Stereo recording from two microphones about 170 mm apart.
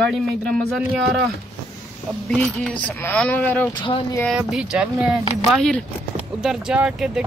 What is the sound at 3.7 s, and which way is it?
Speech, 30° left (ahead or behind).